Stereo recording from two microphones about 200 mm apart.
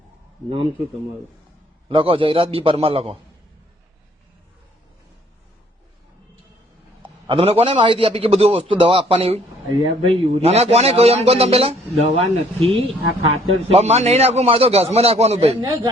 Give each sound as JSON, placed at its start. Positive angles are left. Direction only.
{"t": 1.9, "sound": "a man's voice", "side_deg": -25}
{"t": 7.0, "sound": "a man's voice", "side_deg": -25}
{"t": 15.6, "sound": "a man's voice", "side_deg": -20}